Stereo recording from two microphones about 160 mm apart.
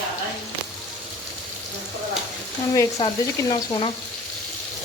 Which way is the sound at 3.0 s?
25° left (ahead or behind).